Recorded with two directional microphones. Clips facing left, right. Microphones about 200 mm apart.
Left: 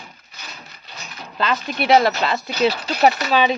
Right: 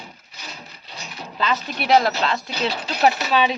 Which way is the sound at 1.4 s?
Centre (ahead or behind).